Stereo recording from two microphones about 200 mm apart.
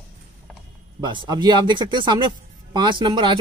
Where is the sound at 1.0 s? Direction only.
20° right (ahead or behind).